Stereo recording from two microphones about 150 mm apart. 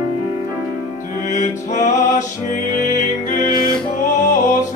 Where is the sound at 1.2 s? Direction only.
55° left (ahead or behind).